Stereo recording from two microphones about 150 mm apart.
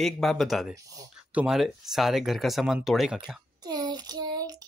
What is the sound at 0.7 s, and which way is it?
Speech, 20° right (ahead or behind).